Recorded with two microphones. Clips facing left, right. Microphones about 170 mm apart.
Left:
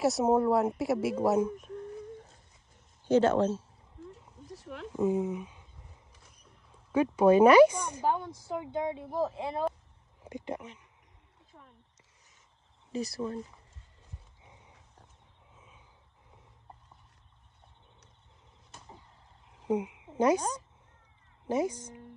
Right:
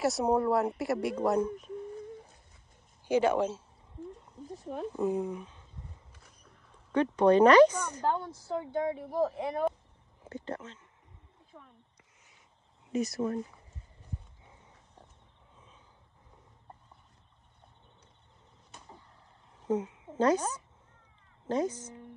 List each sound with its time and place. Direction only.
0.0 s a woman's voice: centre (ahead or behind)
3.1 s speech: 10° right (ahead or behind)
4.9 s speech: centre (ahead or behind)
6.7 s a woman's voice: 5° left (ahead or behind); by 9.7 s 25° left (ahead or behind)
10.2 s speech: 15° left (ahead or behind)
12.9 s speech: 35° left (ahead or behind)
14.4 s horse: 15° left (ahead or behind)
15.5 s a sound: 10° left (ahead or behind)
18.7 s arrow: centre (ahead or behind)
19.6 s a sound: 15° left (ahead or behind)
20.2 s speech: 15° left (ahead or behind)
21.5 s a woman's voice: 10° left (ahead or behind)